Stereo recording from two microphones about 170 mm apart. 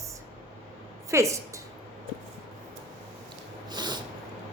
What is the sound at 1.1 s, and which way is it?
Speech, 15° right (ahead or behind).